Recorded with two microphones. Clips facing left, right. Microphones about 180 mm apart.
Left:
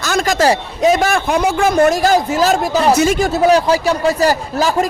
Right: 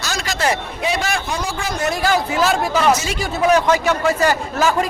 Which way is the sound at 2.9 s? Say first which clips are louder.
Left 8 dB; 55° left (ahead or behind).